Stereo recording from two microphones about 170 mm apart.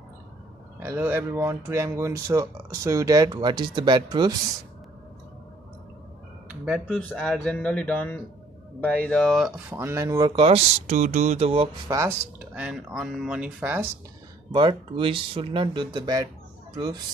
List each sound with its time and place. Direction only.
0.7 s speech: 15° right (ahead or behind)
6.6 s speech: centre (ahead or behind)
9.7 s speech: 15° right (ahead or behind); by 11.7 s 35° right (ahead or behind)
11.9 s speech: 10° right (ahead or behind)
14.5 s speech: 30° right (ahead or behind)